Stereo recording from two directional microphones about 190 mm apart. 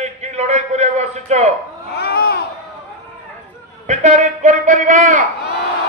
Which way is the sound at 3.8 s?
40° right (ahead or behind).